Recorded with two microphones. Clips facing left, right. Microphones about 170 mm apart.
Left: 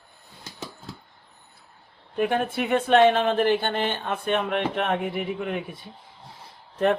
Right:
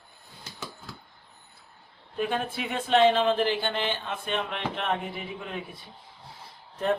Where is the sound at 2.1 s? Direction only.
60° left (ahead or behind).